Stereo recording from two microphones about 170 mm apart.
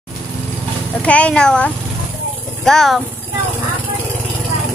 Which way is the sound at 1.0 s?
5° left (ahead or behind).